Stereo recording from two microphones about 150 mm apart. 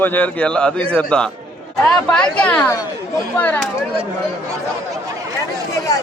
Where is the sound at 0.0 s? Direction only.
10° left (ahead or behind).